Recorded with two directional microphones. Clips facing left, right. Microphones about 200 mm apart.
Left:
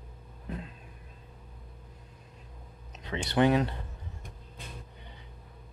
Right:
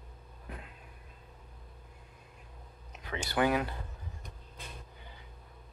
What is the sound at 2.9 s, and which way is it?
Speech, 25° left (ahead or behind).